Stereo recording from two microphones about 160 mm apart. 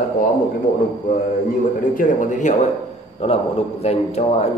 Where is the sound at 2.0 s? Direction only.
55° left (ahead or behind).